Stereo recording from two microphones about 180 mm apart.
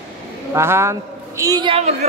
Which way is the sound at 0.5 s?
15° right (ahead or behind).